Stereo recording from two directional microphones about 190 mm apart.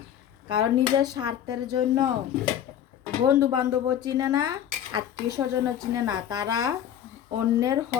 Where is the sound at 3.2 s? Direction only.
20° right (ahead or behind).